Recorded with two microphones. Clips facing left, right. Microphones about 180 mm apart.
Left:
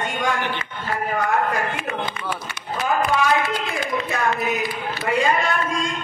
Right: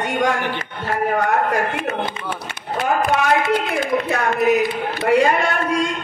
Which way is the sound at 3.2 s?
60° right (ahead or behind).